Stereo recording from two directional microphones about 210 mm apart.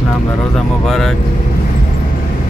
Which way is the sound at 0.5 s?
Centre (ahead or behind).